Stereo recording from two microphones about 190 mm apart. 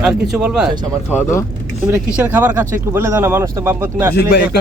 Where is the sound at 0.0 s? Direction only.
5° right (ahead or behind).